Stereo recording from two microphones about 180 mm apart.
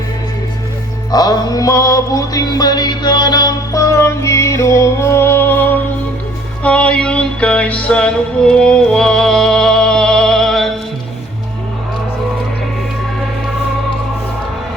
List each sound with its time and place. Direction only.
1.1 s music: 20° left (ahead or behind); by 10.7 s centre (ahead or behind)